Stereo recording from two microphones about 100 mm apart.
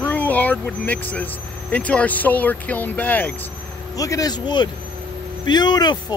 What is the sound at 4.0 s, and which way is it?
Speech, 35° left (ahead or behind).